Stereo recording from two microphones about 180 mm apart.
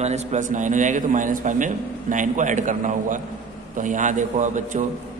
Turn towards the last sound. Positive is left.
turn(degrees=-45)  # may be behind; listen again after turning